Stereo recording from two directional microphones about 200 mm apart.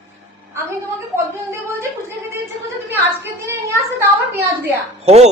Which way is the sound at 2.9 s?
10° right (ahead or behind).